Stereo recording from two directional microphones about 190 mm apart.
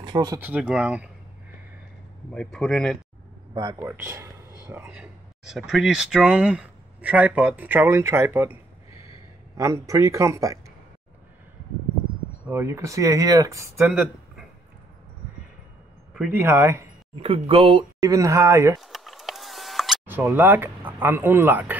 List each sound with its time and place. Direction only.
0.0 s speech: 20° right (ahead or behind)
0.4 s speech: 5° right (ahead or behind)
2.3 s speech: 5° left (ahead or behind)
3.5 s speech: 20° right (ahead or behind)
9.6 s speech: 15° right (ahead or behind)
12.4 s speech: 15° right (ahead or behind)
13.8 s speech: 5° right (ahead or behind)
16.1 s speech: 5° right (ahead or behind)
17.1 s speech: 30° right (ahead or behind)
18.0 s speech: 15° right (ahead or behind)
18.8 s a sound: centre (ahead or behind)
20.1 s speech: 10° right (ahead or behind)